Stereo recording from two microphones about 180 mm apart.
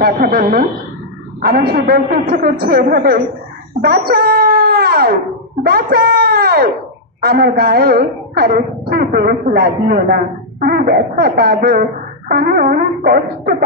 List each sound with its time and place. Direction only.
0.0 s a woman's voice: 55° right (ahead or behind)